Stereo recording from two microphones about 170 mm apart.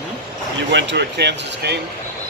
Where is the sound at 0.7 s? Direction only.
85° right.